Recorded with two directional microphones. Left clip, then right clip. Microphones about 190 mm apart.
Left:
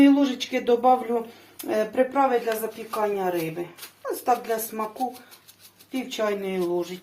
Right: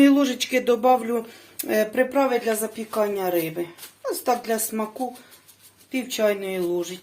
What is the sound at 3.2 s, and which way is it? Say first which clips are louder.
Speech: right 2 dB; 40° right (ahead or behind).